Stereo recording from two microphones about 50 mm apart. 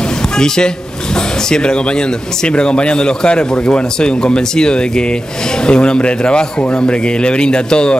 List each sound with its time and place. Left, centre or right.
1.5 s a man's voice: centre